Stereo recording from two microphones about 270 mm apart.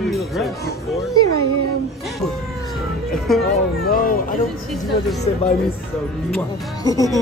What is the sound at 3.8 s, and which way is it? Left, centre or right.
Speech, left.